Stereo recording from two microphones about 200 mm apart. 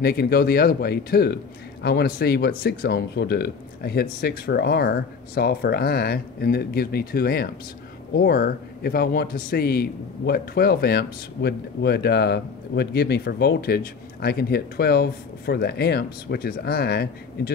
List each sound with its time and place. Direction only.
0.0 s a man's voice: 50° left (ahead or behind)